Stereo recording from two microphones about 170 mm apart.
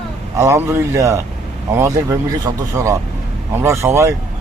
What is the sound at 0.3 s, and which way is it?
Speech, 15° right (ahead or behind).